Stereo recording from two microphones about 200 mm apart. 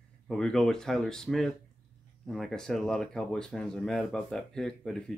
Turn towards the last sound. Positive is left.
turn(degrees=0)  # may be behind; listen again after turning